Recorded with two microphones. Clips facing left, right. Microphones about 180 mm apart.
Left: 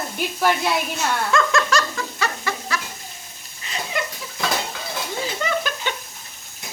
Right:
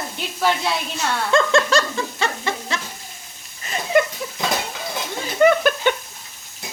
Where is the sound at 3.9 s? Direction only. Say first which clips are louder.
Right 11 dB; 50° right (ahead or behind).